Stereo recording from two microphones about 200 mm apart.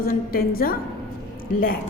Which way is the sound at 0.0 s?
50° left (ahead or behind).